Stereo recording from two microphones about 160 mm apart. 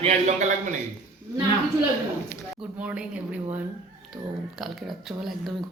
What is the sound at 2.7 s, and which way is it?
Speech, 10° right (ahead or behind).